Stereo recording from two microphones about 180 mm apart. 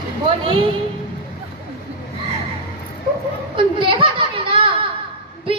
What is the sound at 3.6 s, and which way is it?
Children playing, 30° right (ahead or behind).